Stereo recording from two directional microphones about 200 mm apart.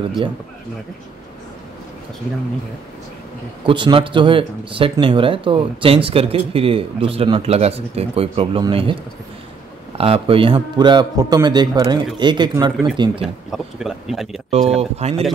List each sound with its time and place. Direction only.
3.6 s speech: 25° right (ahead or behind)
9.9 s speech: 30° right (ahead or behind)
13.5 s speech: centre (ahead or behind)
14.7 s speech: 30° right (ahead or behind)